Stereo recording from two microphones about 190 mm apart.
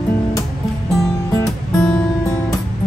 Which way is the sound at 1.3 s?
10° left (ahead or behind).